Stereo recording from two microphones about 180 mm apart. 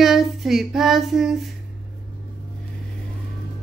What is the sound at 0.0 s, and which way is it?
Child singing, centre (ahead or behind).